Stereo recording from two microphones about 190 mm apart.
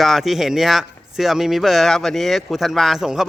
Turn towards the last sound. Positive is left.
turn(degrees=-5)  # may be behind; listen again after turning